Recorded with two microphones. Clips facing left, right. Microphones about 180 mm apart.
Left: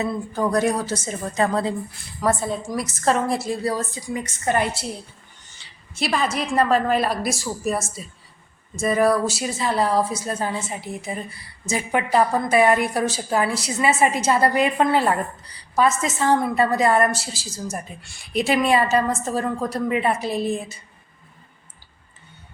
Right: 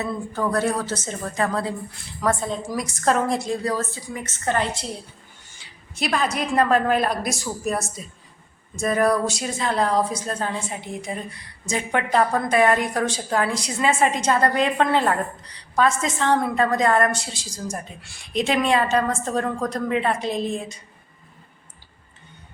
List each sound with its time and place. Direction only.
0.0 s a woman's voice: 15° left (ahead or behind)
1.4 s a woman's voice: 25° left (ahead or behind)
2.2 s a woman's voice: 5° left (ahead or behind)
5.9 s a woman's voice: centre (ahead or behind)